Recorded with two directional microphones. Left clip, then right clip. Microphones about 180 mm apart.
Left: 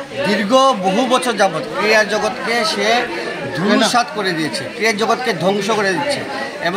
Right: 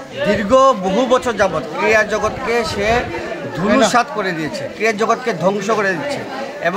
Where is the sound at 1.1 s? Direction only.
25° right (ahead or behind).